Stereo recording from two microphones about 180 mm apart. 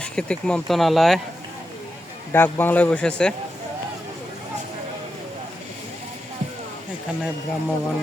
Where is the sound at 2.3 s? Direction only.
10° left (ahead or behind).